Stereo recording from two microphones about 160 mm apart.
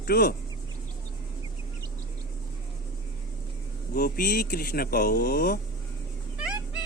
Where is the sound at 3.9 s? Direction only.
65° left (ahead or behind).